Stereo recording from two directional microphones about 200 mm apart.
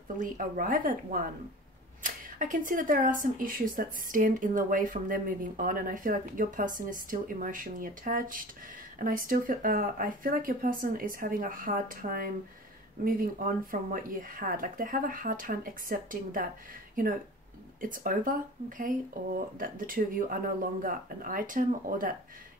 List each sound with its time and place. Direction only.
0.2 s speech: 40° right (ahead or behind)